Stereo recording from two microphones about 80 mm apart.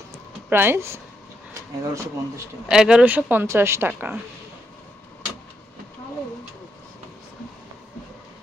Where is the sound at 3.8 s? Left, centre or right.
Right.